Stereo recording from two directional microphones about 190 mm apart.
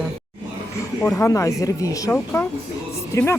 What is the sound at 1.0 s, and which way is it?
Speech, 15° left (ahead or behind).